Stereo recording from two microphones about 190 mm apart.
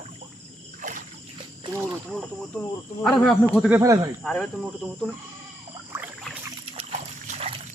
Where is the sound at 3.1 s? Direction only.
5° left (ahead or behind).